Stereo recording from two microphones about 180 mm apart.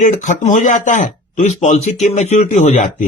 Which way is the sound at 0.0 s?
45° left (ahead or behind).